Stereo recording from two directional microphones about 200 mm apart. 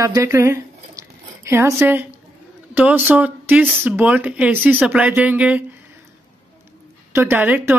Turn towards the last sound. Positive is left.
turn(degrees=-10)  # may be behind; listen again after turning